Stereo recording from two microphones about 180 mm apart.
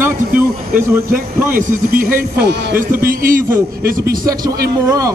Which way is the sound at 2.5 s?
55° right (ahead or behind).